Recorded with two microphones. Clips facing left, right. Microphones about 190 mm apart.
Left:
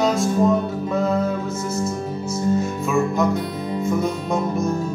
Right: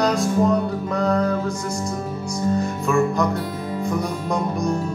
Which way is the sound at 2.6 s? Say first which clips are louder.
Right 1 dB; centre (ahead or behind).